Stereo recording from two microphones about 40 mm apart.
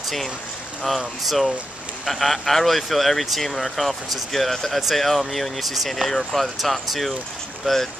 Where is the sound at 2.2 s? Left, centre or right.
Centre.